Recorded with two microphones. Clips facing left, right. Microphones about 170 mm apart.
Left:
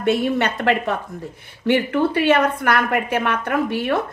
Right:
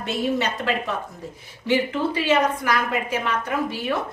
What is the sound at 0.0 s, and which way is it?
A woman's voice, 60° left (ahead or behind).